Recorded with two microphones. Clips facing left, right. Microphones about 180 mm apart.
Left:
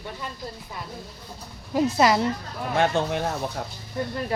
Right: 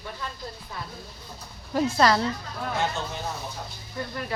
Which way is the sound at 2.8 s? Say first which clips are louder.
Left 9 dB; 60° left (ahead or behind).